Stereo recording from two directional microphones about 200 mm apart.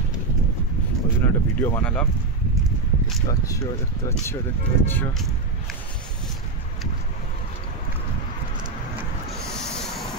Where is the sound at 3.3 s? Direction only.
15° left (ahead or behind).